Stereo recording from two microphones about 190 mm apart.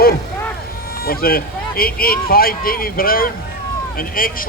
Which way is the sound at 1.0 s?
50° left (ahead or behind).